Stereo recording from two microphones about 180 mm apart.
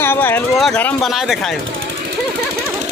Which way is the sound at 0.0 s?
10° left (ahead or behind).